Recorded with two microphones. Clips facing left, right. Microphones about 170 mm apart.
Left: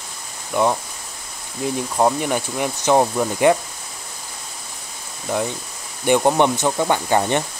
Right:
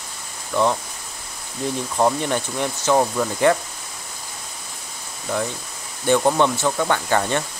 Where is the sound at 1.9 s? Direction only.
15° left (ahead or behind).